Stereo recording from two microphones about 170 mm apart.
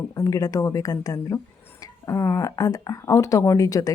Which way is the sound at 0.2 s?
20° left (ahead or behind).